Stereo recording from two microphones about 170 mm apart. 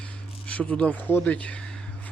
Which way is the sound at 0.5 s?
10° left (ahead or behind).